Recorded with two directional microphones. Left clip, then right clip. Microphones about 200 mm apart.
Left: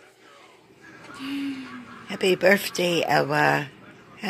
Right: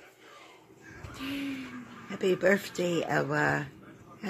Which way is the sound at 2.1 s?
5° left (ahead or behind).